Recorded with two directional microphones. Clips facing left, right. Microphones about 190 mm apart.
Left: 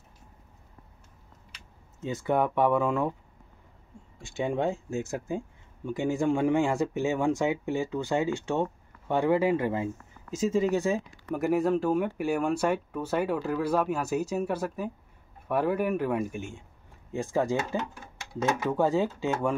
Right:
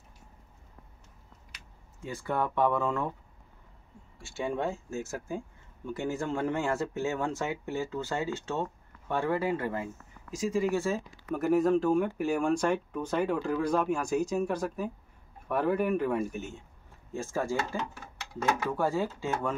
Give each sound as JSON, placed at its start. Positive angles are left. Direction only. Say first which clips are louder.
{"t": 2.0, "sound": "speech", "louder": "left 5 dB", "side_deg": 20}
{"t": 4.2, "sound": "speech", "louder": "left 3 dB", "side_deg": 15}